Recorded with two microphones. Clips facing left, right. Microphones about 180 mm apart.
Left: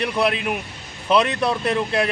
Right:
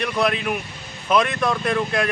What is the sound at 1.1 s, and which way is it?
Speech, 30° left (ahead or behind).